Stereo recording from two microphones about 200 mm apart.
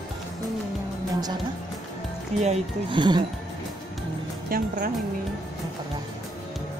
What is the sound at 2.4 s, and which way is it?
Speech, 25° right (ahead or behind).